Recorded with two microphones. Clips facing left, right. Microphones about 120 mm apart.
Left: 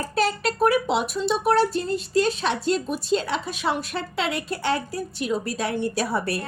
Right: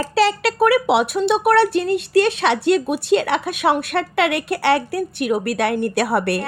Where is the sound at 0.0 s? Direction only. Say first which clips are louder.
Right 6 dB; 90° right.